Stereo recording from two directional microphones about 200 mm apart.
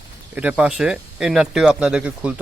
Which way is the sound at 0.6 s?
5° right (ahead or behind).